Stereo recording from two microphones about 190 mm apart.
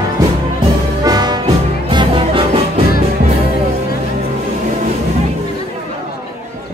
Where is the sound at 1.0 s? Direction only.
20° right (ahead or behind).